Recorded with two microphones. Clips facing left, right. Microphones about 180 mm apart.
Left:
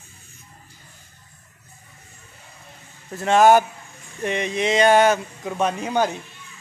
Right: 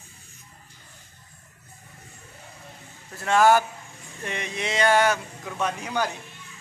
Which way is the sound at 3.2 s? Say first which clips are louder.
Left 4 dB; 20° left (ahead or behind).